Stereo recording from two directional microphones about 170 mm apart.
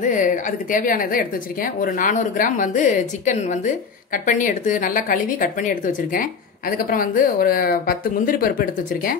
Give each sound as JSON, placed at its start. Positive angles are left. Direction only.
{"t": 0.0, "sound": "a woman's voice", "side_deg": 50}